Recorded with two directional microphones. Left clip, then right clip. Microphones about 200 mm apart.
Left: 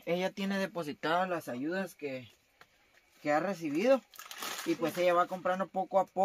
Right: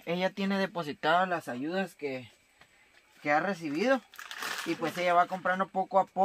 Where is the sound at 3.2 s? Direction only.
10° right (ahead or behind).